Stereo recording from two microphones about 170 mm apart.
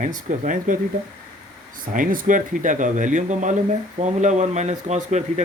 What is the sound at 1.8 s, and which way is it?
Speech, 55° right (ahead or behind).